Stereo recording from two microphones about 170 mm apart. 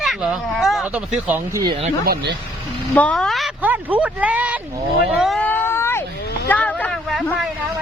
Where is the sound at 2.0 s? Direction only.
70° right (ahead or behind).